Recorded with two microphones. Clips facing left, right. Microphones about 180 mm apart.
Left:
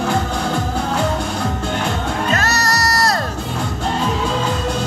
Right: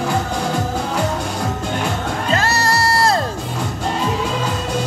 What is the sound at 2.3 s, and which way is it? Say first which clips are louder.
Music: right 3 dB; 30° right (ahead or behind).